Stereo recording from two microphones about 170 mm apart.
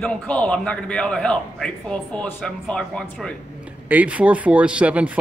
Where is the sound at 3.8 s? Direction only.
10° right (ahead or behind).